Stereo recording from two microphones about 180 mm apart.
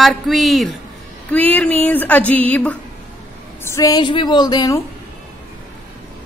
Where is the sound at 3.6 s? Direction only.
15° left (ahead or behind).